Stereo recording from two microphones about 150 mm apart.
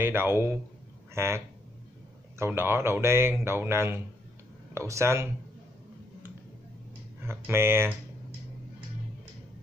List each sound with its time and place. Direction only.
0.0 s speech: 15° right (ahead or behind)
7.2 s speech: 15° right (ahead or behind)